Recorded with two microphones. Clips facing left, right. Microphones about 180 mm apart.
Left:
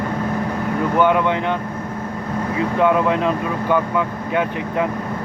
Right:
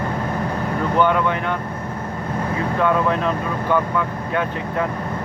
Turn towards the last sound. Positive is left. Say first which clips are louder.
# left 2 dB
turn(degrees=15)  # may be behind; listen again after turning